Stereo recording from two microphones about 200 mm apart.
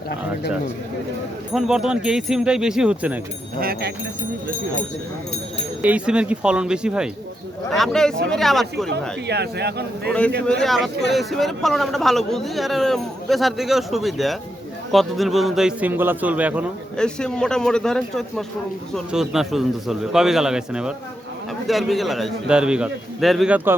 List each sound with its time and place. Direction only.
1.5 s a man's voice: centre (ahead or behind)
3.6 s speech: 50° right (ahead or behind)
5.8 s a man's voice: 5° right (ahead or behind)
8.9 s speech: 55° right (ahead or behind)
10.1 s a man's voice: 5° left (ahead or behind)
17.0 s a man's voice: 5° left (ahead or behind)